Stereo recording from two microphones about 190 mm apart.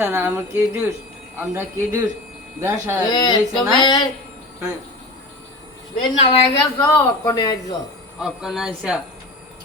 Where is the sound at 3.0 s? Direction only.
25° left (ahead or behind).